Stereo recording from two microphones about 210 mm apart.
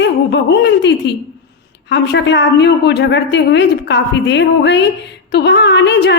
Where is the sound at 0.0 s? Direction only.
55° left (ahead or behind).